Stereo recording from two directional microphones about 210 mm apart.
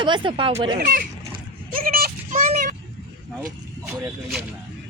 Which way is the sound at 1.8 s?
45° right (ahead or behind).